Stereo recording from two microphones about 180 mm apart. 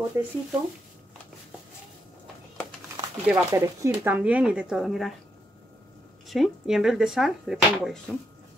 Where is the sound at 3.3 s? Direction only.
15° right (ahead or behind).